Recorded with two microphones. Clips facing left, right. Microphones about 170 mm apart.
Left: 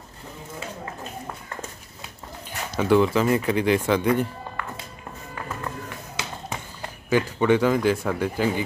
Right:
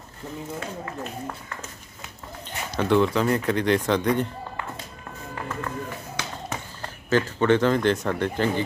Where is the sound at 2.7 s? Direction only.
5° left (ahead or behind).